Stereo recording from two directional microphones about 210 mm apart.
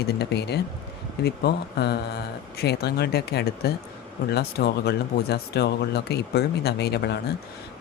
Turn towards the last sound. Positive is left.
turn(degrees=50)  # may be behind; listen again after turning